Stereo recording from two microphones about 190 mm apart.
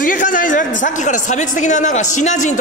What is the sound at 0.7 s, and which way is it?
A man's voice, 40° left (ahead or behind).